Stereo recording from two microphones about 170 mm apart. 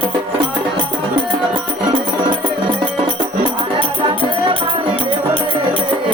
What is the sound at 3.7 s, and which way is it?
Music, 30° right (ahead or behind).